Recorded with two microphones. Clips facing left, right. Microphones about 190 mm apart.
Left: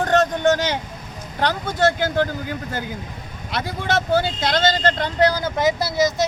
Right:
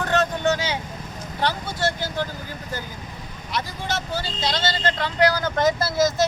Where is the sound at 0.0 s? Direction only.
50° left (ahead or behind).